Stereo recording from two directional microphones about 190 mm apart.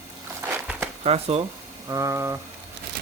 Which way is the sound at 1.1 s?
30° right (ahead or behind).